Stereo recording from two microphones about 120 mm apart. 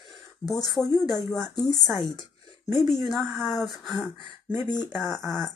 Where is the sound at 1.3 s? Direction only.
5° left (ahead or behind).